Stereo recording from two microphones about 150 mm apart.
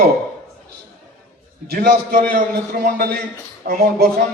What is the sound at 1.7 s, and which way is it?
Speech, 80° right.